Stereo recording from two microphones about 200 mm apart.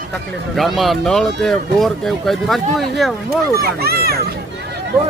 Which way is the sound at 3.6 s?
50° right (ahead or behind).